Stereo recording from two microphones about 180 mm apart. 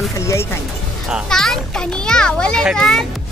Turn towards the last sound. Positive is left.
turn(degrees=5)  # may be behind; listen again after turning